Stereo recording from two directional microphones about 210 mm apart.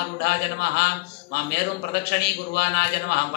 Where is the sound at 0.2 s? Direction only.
50° left (ahead or behind).